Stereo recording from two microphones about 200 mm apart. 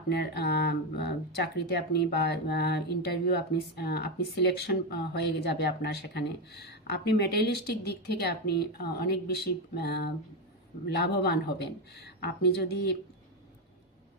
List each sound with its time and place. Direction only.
0.1 s speech: 55° left (ahead or behind)